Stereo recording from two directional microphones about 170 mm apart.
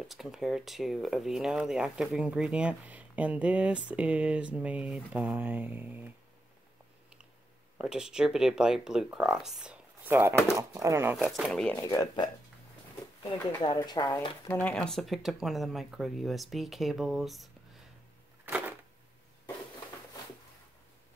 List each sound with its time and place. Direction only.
0.1 s speech: centre (ahead or behind)
7.7 s speech: 5° right (ahead or behind)
11.2 s speech: centre (ahead or behind)
11.8 s speech: 20° left (ahead or behind)
13.6 s speech: 25° left (ahead or behind)
14.5 s speech: 10° left (ahead or behind)
18.4 s a sound: 10° right (ahead or behind)